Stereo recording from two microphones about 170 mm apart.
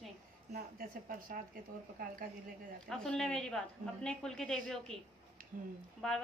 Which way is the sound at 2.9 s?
5° left (ahead or behind).